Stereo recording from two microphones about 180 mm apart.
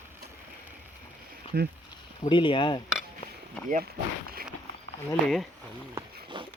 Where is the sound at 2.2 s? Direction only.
30° left (ahead or behind).